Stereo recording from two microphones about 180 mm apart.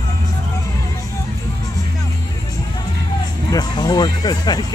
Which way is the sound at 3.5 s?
20° left (ahead or behind).